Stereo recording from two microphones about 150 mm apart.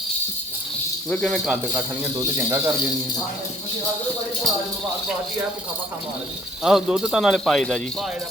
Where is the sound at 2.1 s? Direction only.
25° right (ahead or behind).